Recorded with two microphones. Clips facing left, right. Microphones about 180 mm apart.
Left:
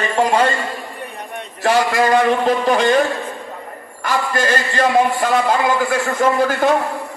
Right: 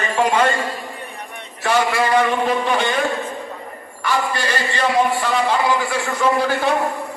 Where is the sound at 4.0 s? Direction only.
45° left (ahead or behind).